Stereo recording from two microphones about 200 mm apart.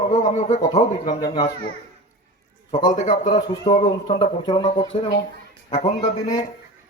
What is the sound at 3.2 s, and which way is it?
A man's voice, 20° left (ahead or behind).